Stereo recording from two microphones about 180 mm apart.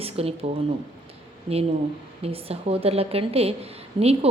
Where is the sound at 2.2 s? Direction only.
35° right (ahead or behind).